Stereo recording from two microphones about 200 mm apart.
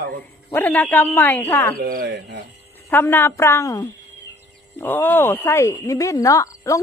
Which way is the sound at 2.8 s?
10° left (ahead or behind).